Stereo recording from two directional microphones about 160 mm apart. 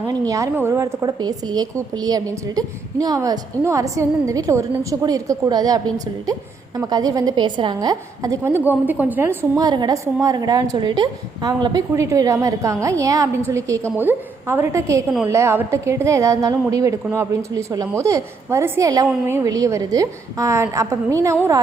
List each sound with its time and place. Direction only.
0.1 s a woman's voice: 20° right (ahead or behind)